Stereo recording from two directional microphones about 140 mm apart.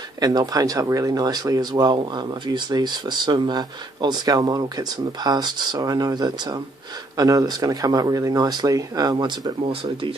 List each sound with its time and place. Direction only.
0.2 s speech: 30° right (ahead or behind)